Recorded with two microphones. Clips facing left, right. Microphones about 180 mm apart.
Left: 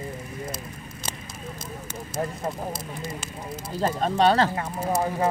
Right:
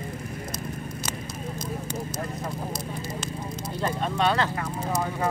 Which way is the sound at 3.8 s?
35° left (ahead or behind).